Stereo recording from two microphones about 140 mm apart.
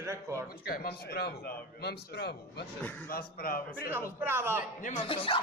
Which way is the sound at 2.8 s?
15° left (ahead or behind).